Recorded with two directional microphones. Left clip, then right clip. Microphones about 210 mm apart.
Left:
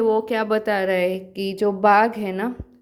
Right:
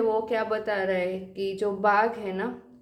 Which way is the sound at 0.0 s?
45° left (ahead or behind).